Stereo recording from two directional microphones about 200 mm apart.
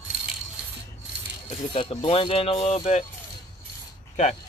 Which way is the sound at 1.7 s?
30° left (ahead or behind).